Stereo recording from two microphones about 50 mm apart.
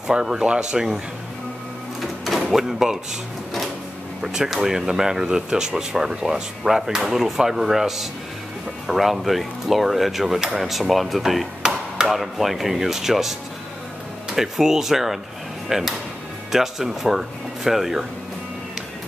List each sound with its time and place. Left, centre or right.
0.0 s speech: centre
2.0 s drawer open or close: centre
4.2 s speech: centre
11.6 s chop: centre
12.1 s speech: centre